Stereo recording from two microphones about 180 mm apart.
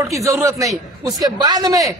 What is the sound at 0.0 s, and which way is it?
A man's voice, 15° right (ahead or behind).